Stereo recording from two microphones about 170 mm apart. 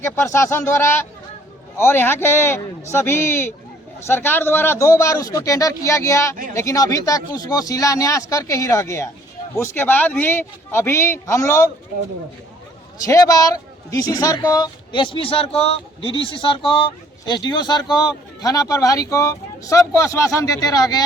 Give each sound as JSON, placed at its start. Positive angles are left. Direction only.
{"t": 0.0, "sound": "speech", "side_deg": 15}
{"t": 13.1, "sound": "speech", "side_deg": 20}